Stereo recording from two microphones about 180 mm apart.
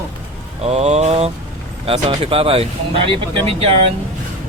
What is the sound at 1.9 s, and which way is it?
Speech, 30° right (ahead or behind).